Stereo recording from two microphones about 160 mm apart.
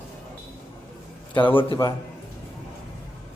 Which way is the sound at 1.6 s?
30° left (ahead or behind).